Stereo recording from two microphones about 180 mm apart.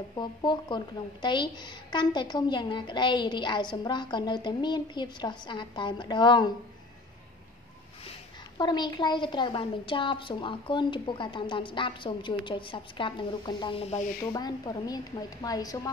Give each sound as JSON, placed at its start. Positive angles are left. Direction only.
{"t": 0.1, "sound": "a woman's voice", "side_deg": 25}
{"t": 8.5, "sound": "a woman's voice", "side_deg": 25}
{"t": 14.2, "sound": "a woman's voice", "side_deg": 20}